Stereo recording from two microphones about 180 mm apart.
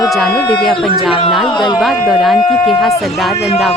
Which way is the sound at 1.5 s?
25° left (ahead or behind).